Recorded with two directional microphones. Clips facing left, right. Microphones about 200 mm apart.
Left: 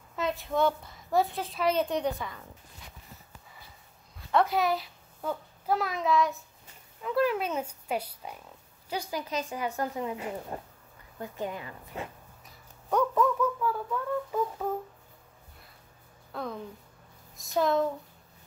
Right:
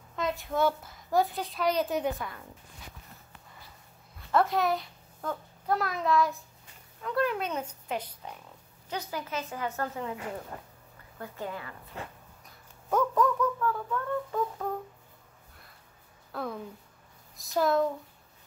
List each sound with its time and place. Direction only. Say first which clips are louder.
0.1 s a woman's voice: left 1 dB; centre (ahead or behind)
4.3 s a child's voice: even; centre (ahead or behind); by 12.1 s 20° left (ahead or behind)
12.4 s speech: even; centre (ahead or behind)
16.3 s a sound: right 1 dB; centre (ahead or behind)
17.4 s a woman's voice: even; centre (ahead or behind)